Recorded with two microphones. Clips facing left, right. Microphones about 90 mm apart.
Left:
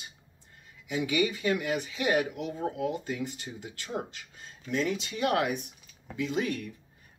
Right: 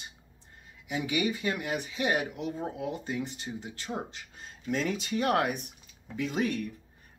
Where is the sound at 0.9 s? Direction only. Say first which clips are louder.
Left 2 dB; 30° right (ahead or behind).